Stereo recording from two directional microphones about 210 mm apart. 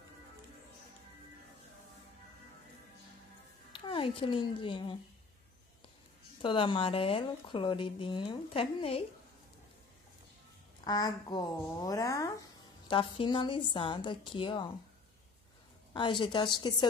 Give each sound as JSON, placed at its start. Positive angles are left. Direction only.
{"t": 3.8, "sound": "a woman's voice", "side_deg": 25}
{"t": 6.4, "sound": "a woman's voice", "side_deg": 25}
{"t": 10.8, "sound": "a woman's voice", "side_deg": 20}
{"t": 15.9, "sound": "a woman's voice", "side_deg": 20}